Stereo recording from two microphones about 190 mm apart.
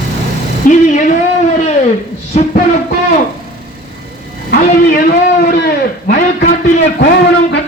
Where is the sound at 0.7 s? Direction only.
45° left (ahead or behind).